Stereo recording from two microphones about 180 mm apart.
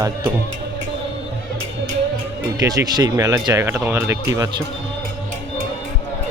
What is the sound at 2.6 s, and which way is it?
Speech, 20° right (ahead or behind).